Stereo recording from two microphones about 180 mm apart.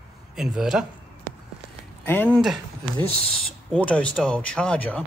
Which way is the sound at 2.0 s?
10° left (ahead or behind).